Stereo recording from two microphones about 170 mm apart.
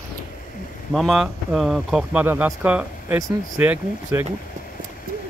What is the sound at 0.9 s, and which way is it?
Speech, centre (ahead or behind).